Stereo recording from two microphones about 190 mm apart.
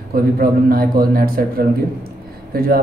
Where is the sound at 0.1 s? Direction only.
50° right (ahead or behind).